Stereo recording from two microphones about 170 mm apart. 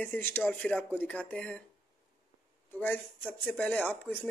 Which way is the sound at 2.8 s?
10° left (ahead or behind).